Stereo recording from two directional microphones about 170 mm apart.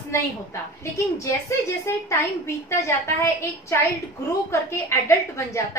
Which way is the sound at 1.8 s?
15° left (ahead or behind).